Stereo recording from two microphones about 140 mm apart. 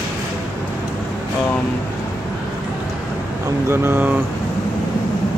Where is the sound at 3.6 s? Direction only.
15° right (ahead or behind).